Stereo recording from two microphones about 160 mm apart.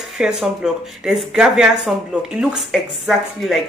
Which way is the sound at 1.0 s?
5° right (ahead or behind).